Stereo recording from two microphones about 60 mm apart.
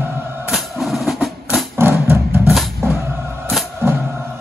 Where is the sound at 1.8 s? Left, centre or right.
Right.